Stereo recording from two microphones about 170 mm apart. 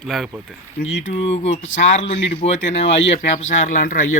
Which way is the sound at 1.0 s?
35° left (ahead or behind).